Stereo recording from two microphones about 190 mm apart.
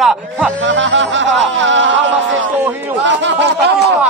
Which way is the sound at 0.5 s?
70° right (ahead or behind).